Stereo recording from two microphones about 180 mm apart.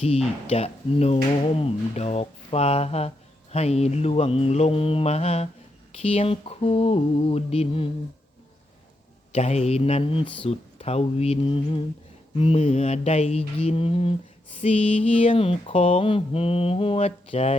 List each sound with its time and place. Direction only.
0.0 s speech: 35° left (ahead or behind)
9.3 s speech: 35° left (ahead or behind)